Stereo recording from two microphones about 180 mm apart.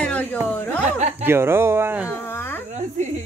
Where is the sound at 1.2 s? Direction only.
15° right (ahead or behind).